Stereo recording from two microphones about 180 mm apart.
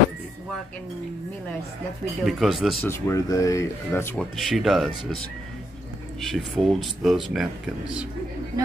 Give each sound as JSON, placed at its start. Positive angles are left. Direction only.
{"t": 2.2, "sound": "speech", "side_deg": 0}
{"t": 2.8, "sound": "speech", "side_deg": 15}
{"t": 4.4, "sound": "speech", "side_deg": 0}
{"t": 6.2, "sound": "speech", "side_deg": 0}